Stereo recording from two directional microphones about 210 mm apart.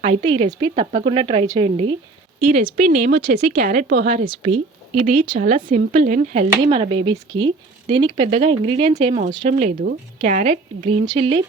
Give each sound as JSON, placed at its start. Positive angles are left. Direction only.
{"t": 0.0, "sound": "speech", "side_deg": -30}
{"t": 2.7, "sound": "speech", "side_deg": -45}
{"t": 4.3, "sound": "speech", "side_deg": -25}
{"t": 5.4, "sound": "speech", "side_deg": -40}